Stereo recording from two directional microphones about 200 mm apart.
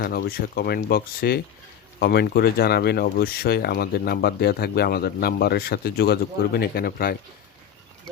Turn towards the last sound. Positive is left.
turn(degrees=50)  # may be behind; listen again after turning